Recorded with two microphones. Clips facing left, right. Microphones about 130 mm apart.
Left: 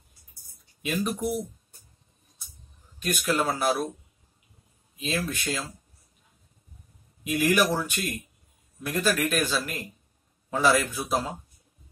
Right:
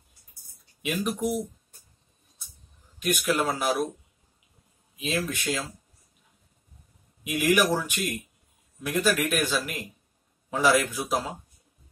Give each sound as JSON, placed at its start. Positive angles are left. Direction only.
{"t": 0.8, "sound": "speech", "side_deg": -15}
{"t": 3.0, "sound": "speech", "side_deg": -15}
{"t": 4.9, "sound": "speech", "side_deg": -15}
{"t": 7.2, "sound": "speech", "side_deg": -15}